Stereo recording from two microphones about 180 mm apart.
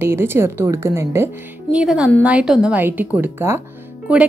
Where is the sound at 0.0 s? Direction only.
15° right (ahead or behind).